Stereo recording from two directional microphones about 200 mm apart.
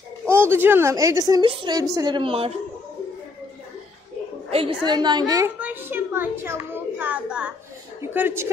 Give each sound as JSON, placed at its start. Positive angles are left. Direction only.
{"t": 0.3, "sound": "a woman's voice", "side_deg": -10}
{"t": 4.5, "sound": "a woman's voice", "side_deg": -30}